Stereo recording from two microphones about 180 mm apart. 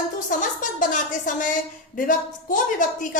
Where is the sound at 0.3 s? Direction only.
45° left (ahead or behind).